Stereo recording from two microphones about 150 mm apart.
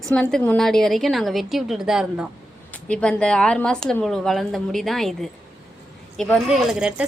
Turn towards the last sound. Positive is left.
turn(degrees=-5)  # may be behind; listen again after turning